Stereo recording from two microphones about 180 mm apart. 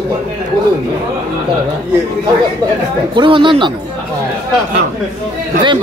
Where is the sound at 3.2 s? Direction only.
25° right (ahead or behind).